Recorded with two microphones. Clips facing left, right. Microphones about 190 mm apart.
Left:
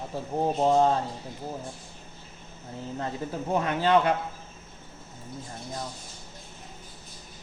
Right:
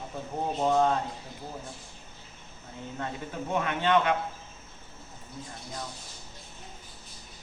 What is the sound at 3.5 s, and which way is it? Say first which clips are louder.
Speech: left 3 dB; 35° left (ahead or behind).